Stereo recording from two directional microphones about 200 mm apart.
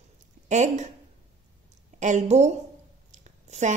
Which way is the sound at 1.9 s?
35° right (ahead or behind).